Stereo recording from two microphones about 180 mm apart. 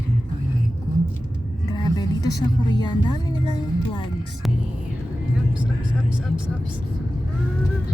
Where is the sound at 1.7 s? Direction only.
20° left (ahead or behind).